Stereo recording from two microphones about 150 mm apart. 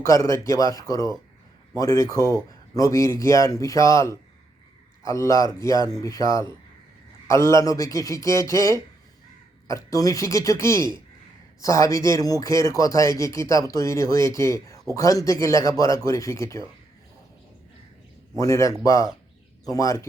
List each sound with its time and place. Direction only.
0.0 s speech: 20° left (ahead or behind)
18.3 s speech: 20° left (ahead or behind)